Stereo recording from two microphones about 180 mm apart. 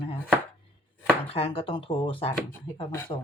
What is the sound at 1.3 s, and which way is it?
Speech, 30° left (ahead or behind).